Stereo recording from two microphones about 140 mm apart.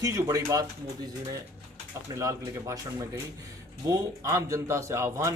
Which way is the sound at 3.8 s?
20° right (ahead or behind).